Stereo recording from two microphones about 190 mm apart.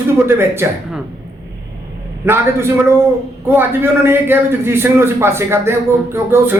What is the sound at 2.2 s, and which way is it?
A man's voice, 15° right (ahead or behind).